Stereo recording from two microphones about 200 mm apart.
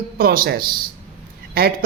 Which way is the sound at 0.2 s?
50° right (ahead or behind).